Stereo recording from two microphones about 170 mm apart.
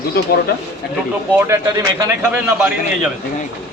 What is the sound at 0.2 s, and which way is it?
Speech, 65° left (ahead or behind).